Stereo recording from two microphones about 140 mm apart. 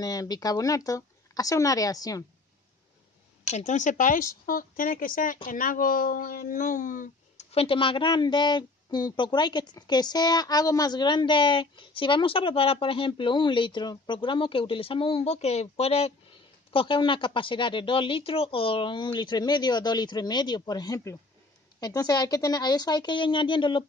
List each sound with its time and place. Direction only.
0.0 s speech: 25° left (ahead or behind)
3.4 s speech: 55° left (ahead or behind)
7.5 s a woman's voice: 40° left (ahead or behind)
16.7 s a woman's voice: 35° left (ahead or behind)